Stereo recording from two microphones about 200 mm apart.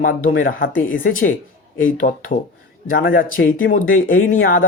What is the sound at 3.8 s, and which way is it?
Speech, 90° left.